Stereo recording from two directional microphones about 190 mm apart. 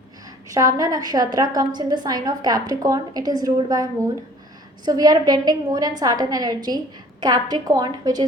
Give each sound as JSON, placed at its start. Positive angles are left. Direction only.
{"t": 0.4, "sound": "a woman's voice", "side_deg": -15}